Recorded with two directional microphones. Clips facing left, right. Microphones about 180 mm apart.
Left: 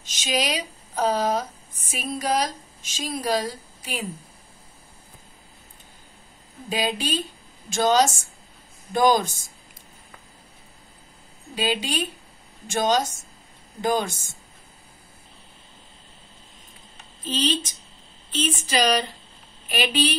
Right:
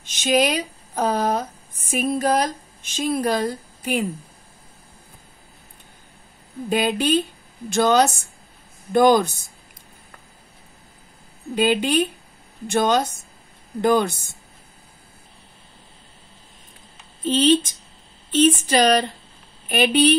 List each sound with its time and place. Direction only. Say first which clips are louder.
0.0 s speech: right 7 dB; 55° right (ahead or behind)
6.7 s a woman's voice: right 6 dB; 60° right (ahead or behind)
11.5 s a woman's voice: right 7 dB; 60° right (ahead or behind)
17.2 s speech: right 9 dB; 50° right (ahead or behind)